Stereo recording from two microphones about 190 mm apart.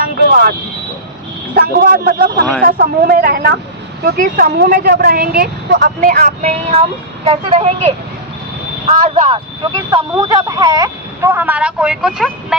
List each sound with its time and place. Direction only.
0.0 s vehicle: 50° right (ahead or behind)
1.5 s a woman's voice: 50° right (ahead or behind)
6.4 s speech: 35° right (ahead or behind)
9.0 s speech: 30° right (ahead or behind)
9.7 s speech: 20° right (ahead or behind); by 12.5 s 5° right (ahead or behind)